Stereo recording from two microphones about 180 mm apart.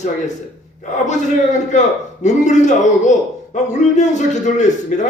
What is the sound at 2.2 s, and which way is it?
A man's voice, 40° left (ahead or behind).